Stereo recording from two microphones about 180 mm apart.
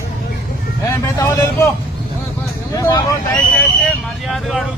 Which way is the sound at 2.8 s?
20° left (ahead or behind).